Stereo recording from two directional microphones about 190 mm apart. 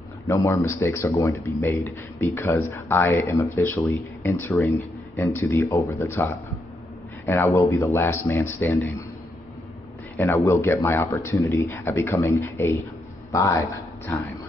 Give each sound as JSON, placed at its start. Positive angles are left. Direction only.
{"t": 0.3, "sound": "a man's voice", "side_deg": 15}
{"t": 10.1, "sound": "a man's voice", "side_deg": 15}